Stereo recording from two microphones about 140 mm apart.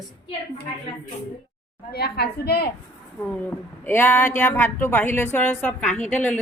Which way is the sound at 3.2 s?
15° left (ahead or behind).